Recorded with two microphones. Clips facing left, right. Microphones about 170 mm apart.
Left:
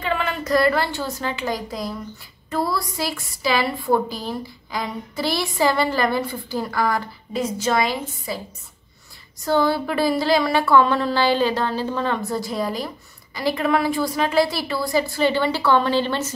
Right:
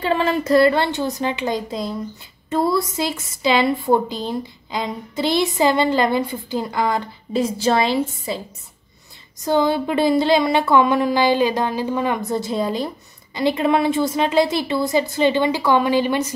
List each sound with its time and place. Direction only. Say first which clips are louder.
0.0 s a woman's voice: right 5 dB; 35° right (ahead or behind)
9.4 s a woman's voice: right 2 dB; 20° right (ahead or behind)